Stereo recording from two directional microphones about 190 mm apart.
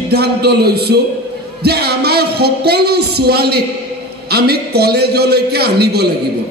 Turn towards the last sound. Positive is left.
turn(degrees=-60)  # may be behind; listen again after turning